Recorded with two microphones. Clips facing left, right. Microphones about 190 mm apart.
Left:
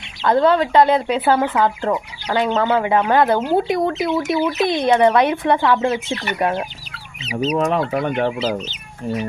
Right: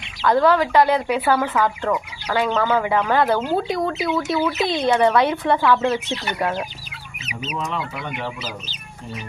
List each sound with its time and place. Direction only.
0.3 s speech: 25° left (ahead or behind)
7.3 s chicken: 35° left (ahead or behind)
7.6 s speech: 60° left (ahead or behind)
8.4 s speech: 25° left (ahead or behind)